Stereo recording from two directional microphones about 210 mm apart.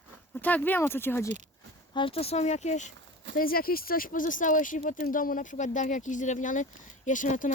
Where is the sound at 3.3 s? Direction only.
45° left (ahead or behind).